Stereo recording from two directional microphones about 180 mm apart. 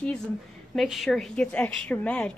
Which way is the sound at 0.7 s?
Centre (ahead or behind).